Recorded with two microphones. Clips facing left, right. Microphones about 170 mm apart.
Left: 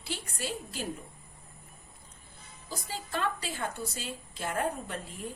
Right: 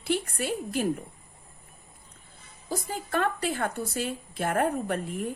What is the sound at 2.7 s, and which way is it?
A woman's voice, 55° right (ahead or behind).